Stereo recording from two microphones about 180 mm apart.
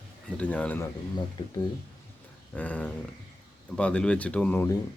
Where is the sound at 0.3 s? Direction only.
5° left (ahead or behind).